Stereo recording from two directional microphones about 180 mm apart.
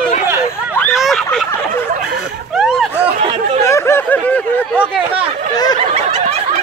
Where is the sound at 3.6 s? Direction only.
15° left (ahead or behind).